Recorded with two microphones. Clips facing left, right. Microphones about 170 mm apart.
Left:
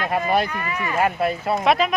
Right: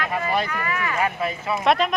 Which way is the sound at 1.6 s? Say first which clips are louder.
Even; centre (ahead or behind).